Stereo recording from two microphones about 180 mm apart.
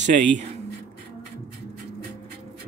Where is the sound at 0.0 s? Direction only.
45° right (ahead or behind).